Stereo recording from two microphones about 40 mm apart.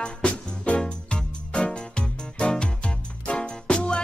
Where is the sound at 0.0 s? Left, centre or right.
Left.